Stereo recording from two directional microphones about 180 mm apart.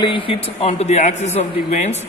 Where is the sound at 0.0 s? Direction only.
30° left (ahead or behind).